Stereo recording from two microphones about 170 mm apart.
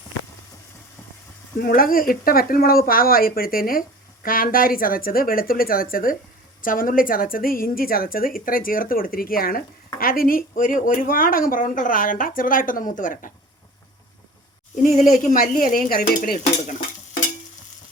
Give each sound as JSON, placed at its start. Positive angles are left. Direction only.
{"t": 1.5, "sound": "speech", "side_deg": 60}
{"t": 15.1, "sound": "speech", "side_deg": 55}